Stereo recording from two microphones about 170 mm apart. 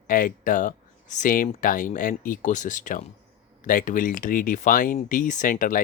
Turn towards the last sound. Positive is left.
turn(degrees=50)  # may be behind; listen again after turning